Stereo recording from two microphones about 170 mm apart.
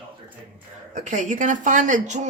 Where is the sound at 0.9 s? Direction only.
45° right (ahead or behind).